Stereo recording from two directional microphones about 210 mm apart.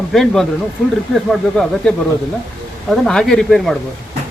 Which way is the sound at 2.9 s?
Centre (ahead or behind).